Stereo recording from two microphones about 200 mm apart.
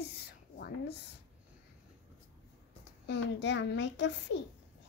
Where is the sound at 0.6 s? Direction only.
55° left (ahead or behind).